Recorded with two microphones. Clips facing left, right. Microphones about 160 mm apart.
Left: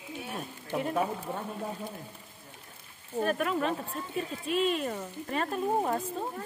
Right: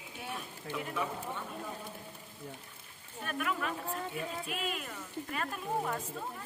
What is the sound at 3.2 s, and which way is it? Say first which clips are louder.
Speech: left 8 dB; 35° left (ahead or behind).